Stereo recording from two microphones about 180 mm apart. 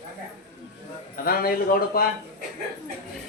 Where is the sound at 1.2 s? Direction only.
55° left (ahead or behind).